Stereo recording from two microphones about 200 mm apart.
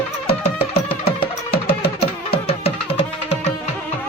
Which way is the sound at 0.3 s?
30° left (ahead or behind).